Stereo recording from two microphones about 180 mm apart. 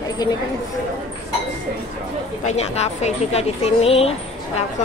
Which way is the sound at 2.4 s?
35° left (ahead or behind).